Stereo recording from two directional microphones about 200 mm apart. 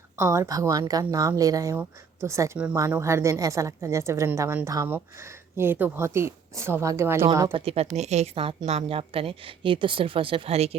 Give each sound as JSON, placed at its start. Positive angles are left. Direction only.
{"t": 0.2, "sound": "a woman's voice", "side_deg": -15}
{"t": 7.5, "sound": "a woman's voice", "side_deg": -30}